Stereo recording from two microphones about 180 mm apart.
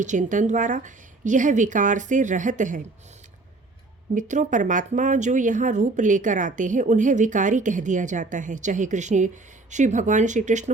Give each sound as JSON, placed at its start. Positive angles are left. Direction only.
{"t": 0.0, "sound": "speech", "side_deg": -45}
{"t": 4.1, "sound": "speech", "side_deg": -45}